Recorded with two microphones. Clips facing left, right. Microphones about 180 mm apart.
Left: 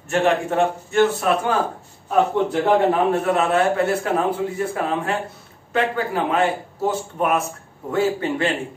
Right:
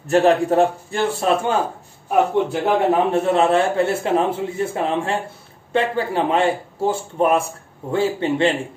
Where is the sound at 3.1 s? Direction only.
25° right (ahead or behind).